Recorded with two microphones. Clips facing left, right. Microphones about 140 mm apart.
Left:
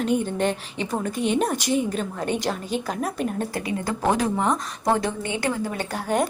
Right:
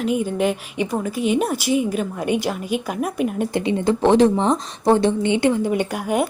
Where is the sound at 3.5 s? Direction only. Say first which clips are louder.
Right 7 dB; 25° right (ahead or behind).